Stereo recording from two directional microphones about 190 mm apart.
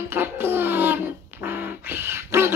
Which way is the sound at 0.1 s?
10° right (ahead or behind).